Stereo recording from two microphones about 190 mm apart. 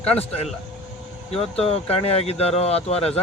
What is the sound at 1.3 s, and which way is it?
Speech, 30° left (ahead or behind).